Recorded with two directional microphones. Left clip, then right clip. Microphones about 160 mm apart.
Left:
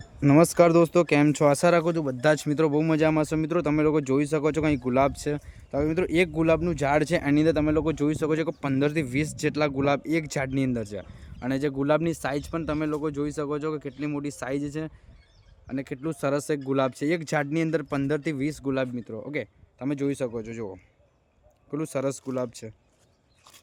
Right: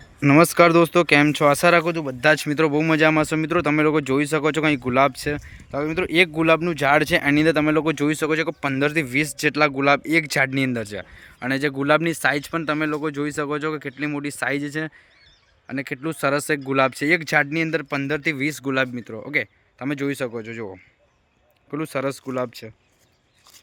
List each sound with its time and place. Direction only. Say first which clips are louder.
0.2 s speech: right 4 dB; centre (ahead or behind)
1.9 s speech: right 4 dB; 25° left (ahead or behind)
2.3 s speech: right 4 dB; 5° left (ahead or behind)
5.7 s speech: right 2 dB; 25° left (ahead or behind)
6.1 s speech: right 7 dB; 5° left (ahead or behind)